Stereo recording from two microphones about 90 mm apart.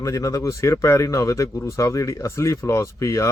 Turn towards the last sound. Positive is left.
turn(degrees=35)  # may be behind; listen again after turning